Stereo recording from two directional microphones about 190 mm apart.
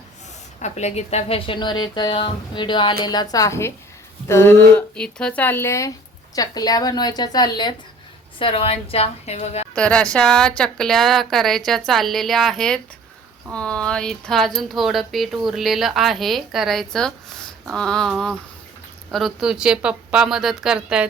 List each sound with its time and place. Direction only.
0.6 s a woman's voice: 35° left (ahead or behind)
9.7 s speech: 5° left (ahead or behind)